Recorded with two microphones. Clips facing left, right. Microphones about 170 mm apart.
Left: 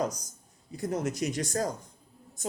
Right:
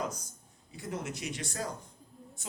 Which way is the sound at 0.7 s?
40° left (ahead or behind).